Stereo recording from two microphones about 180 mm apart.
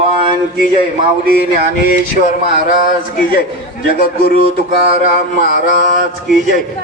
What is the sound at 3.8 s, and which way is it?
Speech, 55° left (ahead or behind).